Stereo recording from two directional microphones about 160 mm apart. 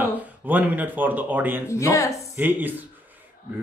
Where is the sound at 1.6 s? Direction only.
20° left (ahead or behind).